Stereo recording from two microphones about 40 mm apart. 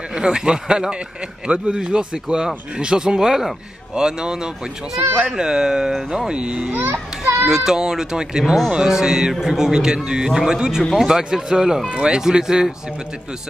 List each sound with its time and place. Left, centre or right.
0.1 s a man's voice: right
6.3 s speech: right
6.8 s children playing: right
7.4 s a man's voice: centre
10.8 s speech: centre
11.1 s a man's voice: centre
11.9 s a man's voice: right